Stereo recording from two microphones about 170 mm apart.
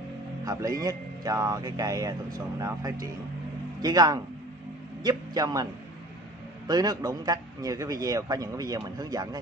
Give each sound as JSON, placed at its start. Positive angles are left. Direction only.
{"t": 0.5, "sound": "a man's voice", "side_deg": -20}
{"t": 6.7, "sound": "a man's voice", "side_deg": -20}